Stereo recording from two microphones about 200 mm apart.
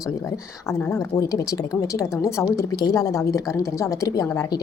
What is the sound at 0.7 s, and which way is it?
A woman's voice, 15° left (ahead or behind).